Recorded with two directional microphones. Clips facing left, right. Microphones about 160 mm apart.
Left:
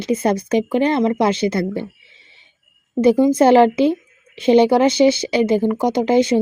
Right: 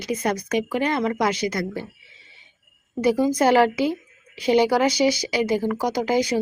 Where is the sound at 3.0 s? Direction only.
25° left (ahead or behind).